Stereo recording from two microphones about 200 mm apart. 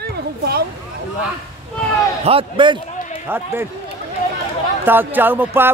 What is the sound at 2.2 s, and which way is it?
Speech, 25° right (ahead or behind).